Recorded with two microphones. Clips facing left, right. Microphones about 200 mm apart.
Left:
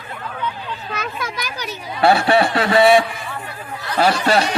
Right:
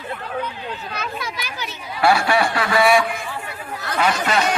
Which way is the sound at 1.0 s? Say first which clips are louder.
Left 2 dB; 45° left (ahead or behind).